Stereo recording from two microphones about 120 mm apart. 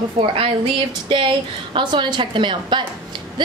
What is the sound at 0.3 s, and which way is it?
A woman's voice, 50° right (ahead or behind).